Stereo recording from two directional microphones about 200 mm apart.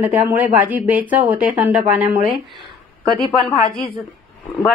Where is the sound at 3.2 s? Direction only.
25° left (ahead or behind).